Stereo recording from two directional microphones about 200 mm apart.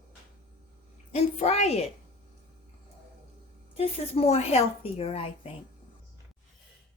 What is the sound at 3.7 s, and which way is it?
A woman's voice, 30° left (ahead or behind).